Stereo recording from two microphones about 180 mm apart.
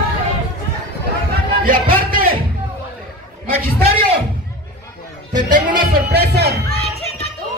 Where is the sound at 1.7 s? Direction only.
50° right (ahead or behind).